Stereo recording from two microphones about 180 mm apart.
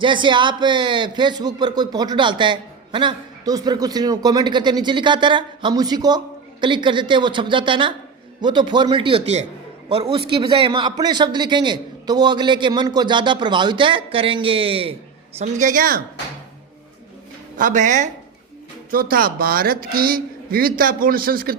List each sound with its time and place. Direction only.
0.0 s speech: 25° right (ahead or behind)
15.4 s a man's voice: 45° right (ahead or behind)
17.6 s a man's voice: 45° right (ahead or behind)
18.9 s a man's voice: 55° right (ahead or behind)